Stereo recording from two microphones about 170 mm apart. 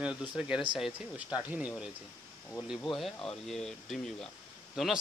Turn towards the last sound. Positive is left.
turn(degrees=0)  # may be behind; listen again after turning